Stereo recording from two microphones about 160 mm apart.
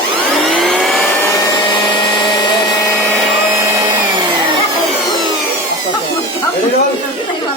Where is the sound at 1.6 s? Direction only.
30° left (ahead or behind).